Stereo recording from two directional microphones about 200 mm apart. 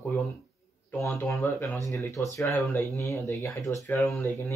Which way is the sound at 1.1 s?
15° left (ahead or behind).